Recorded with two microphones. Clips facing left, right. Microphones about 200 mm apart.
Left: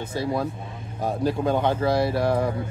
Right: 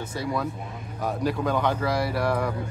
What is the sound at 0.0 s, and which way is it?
Speech, 30° left (ahead or behind).